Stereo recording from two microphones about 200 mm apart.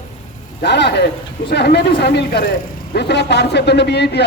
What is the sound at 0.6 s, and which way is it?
A man's voice, 55° left (ahead or behind).